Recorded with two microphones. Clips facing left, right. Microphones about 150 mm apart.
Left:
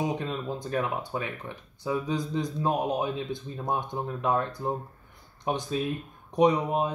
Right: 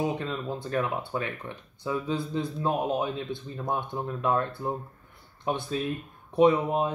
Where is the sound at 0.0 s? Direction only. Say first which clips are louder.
Even; 15° left (ahead or behind).